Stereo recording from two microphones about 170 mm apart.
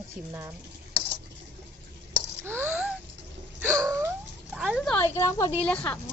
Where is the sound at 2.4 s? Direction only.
15° right (ahead or behind).